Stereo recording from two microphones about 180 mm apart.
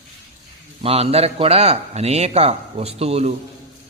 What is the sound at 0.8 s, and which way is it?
A man's voice, 35° right (ahead or behind).